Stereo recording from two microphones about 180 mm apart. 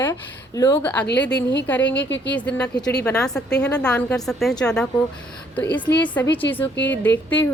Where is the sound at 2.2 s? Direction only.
5° left (ahead or behind).